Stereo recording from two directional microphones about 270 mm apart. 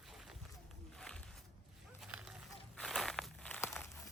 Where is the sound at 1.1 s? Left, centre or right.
Centre.